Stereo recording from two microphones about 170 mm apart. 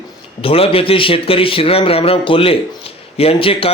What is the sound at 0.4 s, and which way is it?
A man's voice, 35° left (ahead or behind).